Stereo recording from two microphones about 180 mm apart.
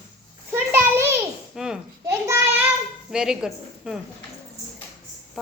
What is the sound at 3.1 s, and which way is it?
Speech, 5° right (ahead or behind).